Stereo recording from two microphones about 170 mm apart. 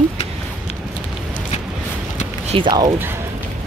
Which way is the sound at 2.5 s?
25° right (ahead or behind).